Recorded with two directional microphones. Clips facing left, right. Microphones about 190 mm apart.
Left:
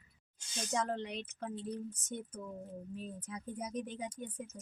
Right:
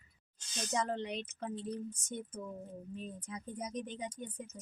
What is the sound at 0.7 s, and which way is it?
Speech, centre (ahead or behind).